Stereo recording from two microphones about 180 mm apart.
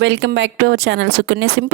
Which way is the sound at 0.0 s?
90° right.